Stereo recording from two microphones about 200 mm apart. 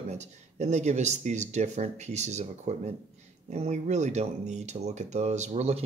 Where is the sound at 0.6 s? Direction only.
35° right (ahead or behind).